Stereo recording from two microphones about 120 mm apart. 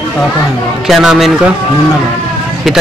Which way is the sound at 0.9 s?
Centre (ahead or behind).